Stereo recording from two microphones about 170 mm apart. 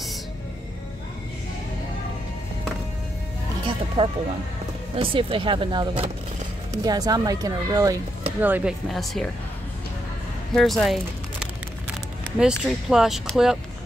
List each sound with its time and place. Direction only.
3.6 s music: 30° right (ahead or behind)
4.9 s speech: 30° right (ahead or behind)
8.4 s speech: 10° right (ahead or behind)
10.5 s speech: centre (ahead or behind)